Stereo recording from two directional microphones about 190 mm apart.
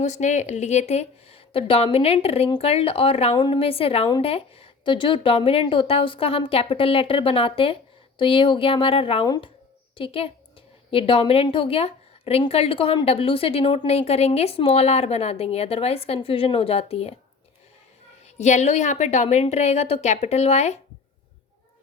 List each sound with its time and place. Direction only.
0.0 s a woman's voice: 40° left (ahead or behind)
18.3 s a woman's voice: 35° left (ahead or behind)